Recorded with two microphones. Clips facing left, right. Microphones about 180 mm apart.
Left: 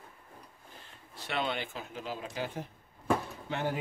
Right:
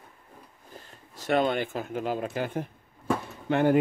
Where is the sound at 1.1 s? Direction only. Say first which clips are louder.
Right 9 dB; 45° right (ahead or behind).